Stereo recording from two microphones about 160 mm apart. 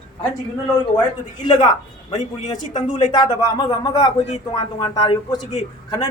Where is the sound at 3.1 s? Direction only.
25° left (ahead or behind).